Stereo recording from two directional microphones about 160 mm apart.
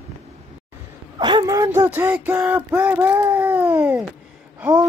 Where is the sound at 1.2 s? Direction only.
25° right (ahead or behind).